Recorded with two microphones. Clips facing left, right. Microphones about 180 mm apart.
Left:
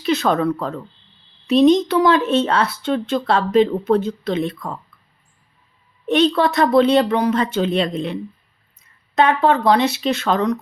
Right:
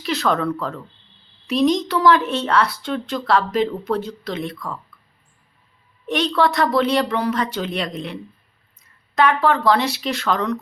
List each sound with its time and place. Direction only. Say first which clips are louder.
0.0 s speech: left 3 dB; 20° left (ahead or behind)
6.1 s speech: left 3 dB; 25° left (ahead or behind)